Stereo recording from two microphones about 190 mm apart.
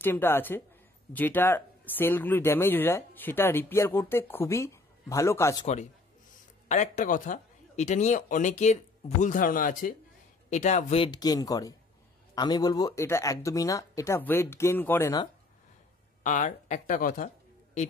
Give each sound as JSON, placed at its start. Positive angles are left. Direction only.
{"t": 0.0, "sound": "speech", "side_deg": 10}
{"t": 6.7, "sound": "speech", "side_deg": 40}
{"t": 11.1, "sound": "speech", "side_deg": 20}
{"t": 16.2, "sound": "speech", "side_deg": 40}